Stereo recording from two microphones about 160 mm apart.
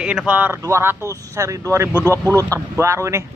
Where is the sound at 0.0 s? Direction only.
5° right (ahead or behind).